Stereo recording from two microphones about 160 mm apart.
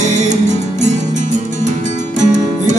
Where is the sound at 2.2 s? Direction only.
50° right (ahead or behind).